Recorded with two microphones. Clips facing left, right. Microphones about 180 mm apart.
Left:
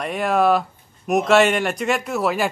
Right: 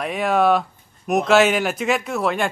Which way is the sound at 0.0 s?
Centre (ahead or behind).